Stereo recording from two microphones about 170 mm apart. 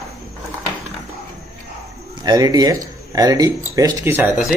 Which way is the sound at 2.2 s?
20° right (ahead or behind).